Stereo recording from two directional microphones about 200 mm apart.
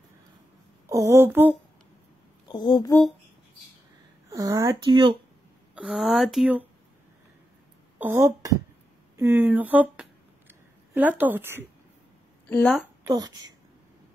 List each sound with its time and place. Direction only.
0.8 s speech: 15° right (ahead or behind)
2.4 s speech: 20° left (ahead or behind)
4.3 s speech: 15° right (ahead or behind)
5.8 s speech: centre (ahead or behind)
8.0 s speech: 10° right (ahead or behind)
12.4 s a woman's voice: 5° left (ahead or behind)
13.0 s a woman's voice: 20° right (ahead or behind)